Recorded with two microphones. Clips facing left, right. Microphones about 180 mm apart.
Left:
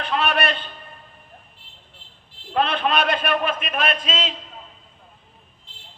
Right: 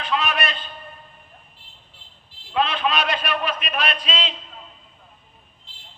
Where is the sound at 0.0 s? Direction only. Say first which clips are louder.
Left 2 dB; 60° left (ahead or behind).